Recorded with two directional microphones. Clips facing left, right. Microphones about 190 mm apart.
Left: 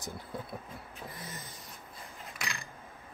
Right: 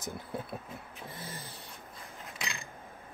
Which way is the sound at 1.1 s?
30° right (ahead or behind).